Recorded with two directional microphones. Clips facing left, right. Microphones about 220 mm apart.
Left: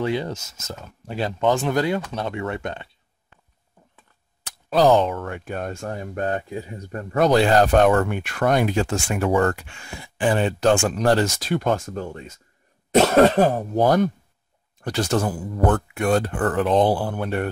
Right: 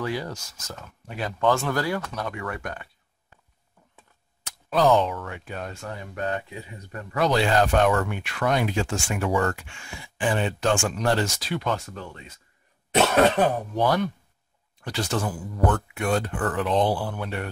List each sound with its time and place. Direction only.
0.0 s speech: 25° left (ahead or behind)
1.5 s speech: 20° left (ahead or behind)
4.5 s a sound: 35° left (ahead or behind)
5.0 s speech: 50° left (ahead or behind)
9.6 s speech: 40° left (ahead or behind)